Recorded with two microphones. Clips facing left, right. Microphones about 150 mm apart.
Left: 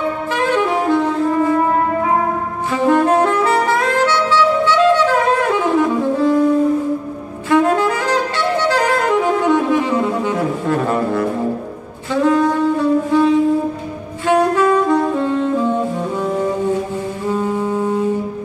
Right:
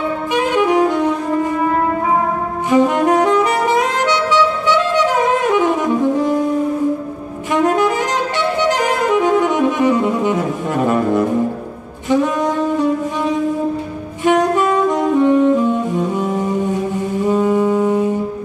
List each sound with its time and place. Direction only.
0.3 s saxophone: 15° right (ahead or behind)
2.7 s saxophone: 15° right (ahead or behind)
7.5 s saxophone: 20° right (ahead or behind)
16.2 s music: 20° right (ahead or behind)